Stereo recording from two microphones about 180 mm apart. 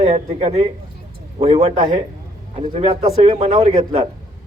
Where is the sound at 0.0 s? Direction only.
35° right (ahead or behind).